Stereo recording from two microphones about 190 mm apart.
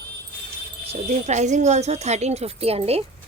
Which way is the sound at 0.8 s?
35° right (ahead or behind).